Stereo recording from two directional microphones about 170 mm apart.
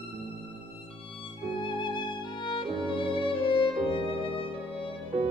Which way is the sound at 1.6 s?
30° left (ahead or behind).